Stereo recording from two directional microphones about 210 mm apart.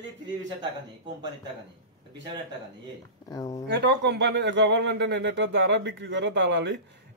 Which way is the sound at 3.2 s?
15° left (ahead or behind).